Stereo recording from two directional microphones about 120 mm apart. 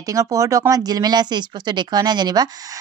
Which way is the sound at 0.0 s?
30° right (ahead or behind).